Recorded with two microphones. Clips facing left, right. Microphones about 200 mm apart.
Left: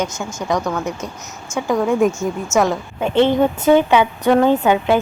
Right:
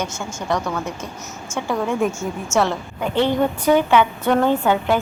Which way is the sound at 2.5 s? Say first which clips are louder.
Left 2 dB; 15° left (ahead or behind).